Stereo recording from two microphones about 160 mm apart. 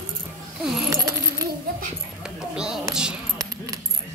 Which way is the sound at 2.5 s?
5° right (ahead or behind).